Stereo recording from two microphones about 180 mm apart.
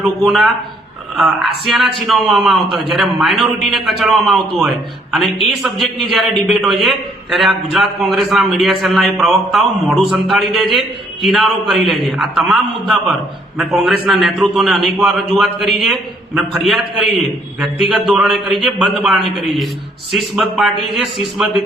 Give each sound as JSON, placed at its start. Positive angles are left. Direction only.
{"t": 1.1, "sound": "a man's voice", "side_deg": 0}